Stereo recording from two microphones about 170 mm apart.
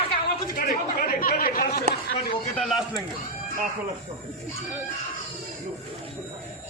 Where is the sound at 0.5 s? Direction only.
55° left (ahead or behind).